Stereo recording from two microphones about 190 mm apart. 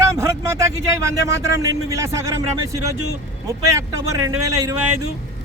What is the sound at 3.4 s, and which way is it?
Speech, 15° right (ahead or behind).